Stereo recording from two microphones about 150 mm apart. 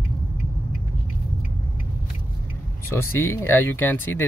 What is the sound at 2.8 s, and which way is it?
Speech, 15° left (ahead or behind).